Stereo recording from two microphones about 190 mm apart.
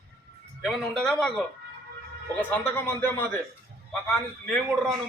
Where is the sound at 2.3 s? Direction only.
10° left (ahead or behind).